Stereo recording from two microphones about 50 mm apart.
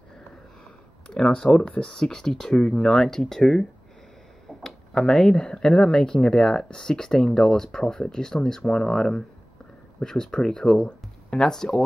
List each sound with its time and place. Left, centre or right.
1.0 s speech: centre